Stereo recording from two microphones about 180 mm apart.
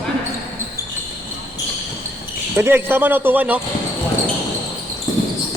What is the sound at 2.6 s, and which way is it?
Speech, 10° right (ahead or behind).